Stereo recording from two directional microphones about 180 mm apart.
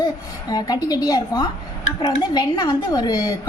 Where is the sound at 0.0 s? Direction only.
20° left (ahead or behind).